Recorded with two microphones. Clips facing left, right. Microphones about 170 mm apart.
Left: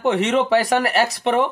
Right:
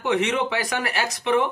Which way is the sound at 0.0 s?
40° left (ahead or behind).